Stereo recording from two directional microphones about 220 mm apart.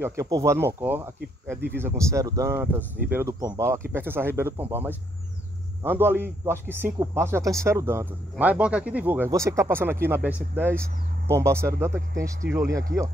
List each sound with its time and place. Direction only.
0.0 s speech: 15° right (ahead or behind)
12.4 s speech: 50° right (ahead or behind)